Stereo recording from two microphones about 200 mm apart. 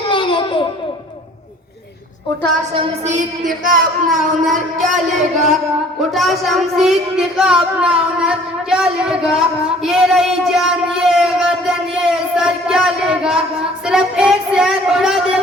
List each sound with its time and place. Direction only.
0.1 s a sound: 25° left (ahead or behind)
2.7 s music: 35° right (ahead or behind)
4.4 s speech: centre (ahead or behind)
6.1 s speech: centre (ahead or behind)